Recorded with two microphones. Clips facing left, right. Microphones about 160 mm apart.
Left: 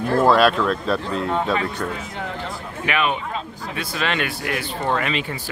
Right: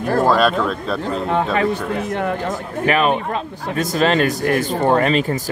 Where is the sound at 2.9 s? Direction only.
40° right (ahead or behind).